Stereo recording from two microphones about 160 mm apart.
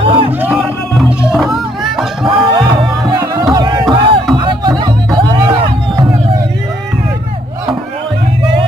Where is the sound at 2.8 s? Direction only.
25° right (ahead or behind).